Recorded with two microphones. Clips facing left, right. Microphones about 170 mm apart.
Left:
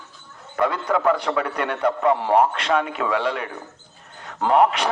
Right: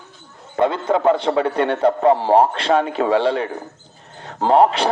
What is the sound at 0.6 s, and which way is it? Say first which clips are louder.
A man's voice: right 4 dB; 25° right (ahead or behind).